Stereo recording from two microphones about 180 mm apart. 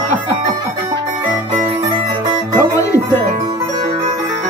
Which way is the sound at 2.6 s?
15° left (ahead or behind).